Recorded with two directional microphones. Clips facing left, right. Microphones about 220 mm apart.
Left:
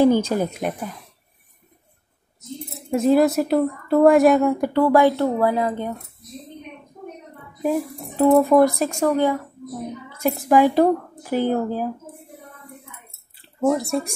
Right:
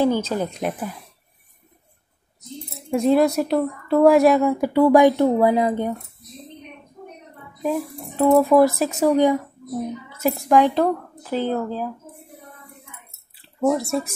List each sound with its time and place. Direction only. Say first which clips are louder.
0.0 s a woman's voice: left 3 dB; 15° left (ahead or behind)
2.9 s a woman's voice: left 1 dB; centre (ahead or behind)
4.7 s speech: right 3 dB; 15° right (ahead or behind)
7.6 s a woman's voice: left 2 dB; 10° left (ahead or behind)
9.0 s speech: right 3 dB; 15° right (ahead or behind)
10.0 s a woman's voice: left 2 dB; 5° right (ahead or behind); by 11.9 s 10° left (ahead or behind)
13.7 s a woman's voice: even; centre (ahead or behind)